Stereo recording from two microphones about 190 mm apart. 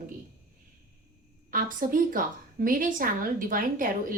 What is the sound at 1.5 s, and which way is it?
A woman's voice, 45° right (ahead or behind).